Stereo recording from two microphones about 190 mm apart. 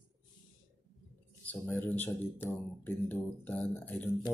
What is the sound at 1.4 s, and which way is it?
Speech, 10° left (ahead or behind).